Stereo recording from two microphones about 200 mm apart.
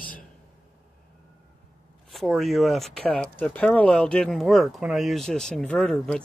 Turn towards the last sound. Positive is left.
turn(degrees=5)  # may be behind; listen again after turning